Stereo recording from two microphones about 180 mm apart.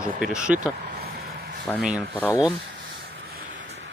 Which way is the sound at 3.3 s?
70° right (ahead or behind).